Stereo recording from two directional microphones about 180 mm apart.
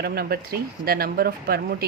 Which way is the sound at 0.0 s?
60° right (ahead or behind).